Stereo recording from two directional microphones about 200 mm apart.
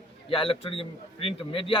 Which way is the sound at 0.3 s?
25° left (ahead or behind).